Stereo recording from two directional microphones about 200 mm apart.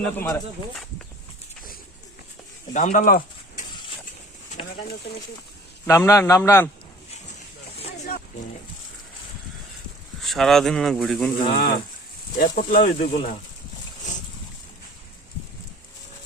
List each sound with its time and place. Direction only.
0.0 s a man's voice: 15° left (ahead or behind)
2.7 s speech: 40° left (ahead or behind)
5.8 s a man's voice: 15° left (ahead or behind)
10.2 s speech: centre (ahead or behind)
11.4 s speech: 40° left (ahead or behind)